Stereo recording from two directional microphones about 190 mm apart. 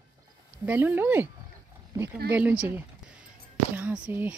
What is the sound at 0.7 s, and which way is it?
Speech, 10° right (ahead or behind).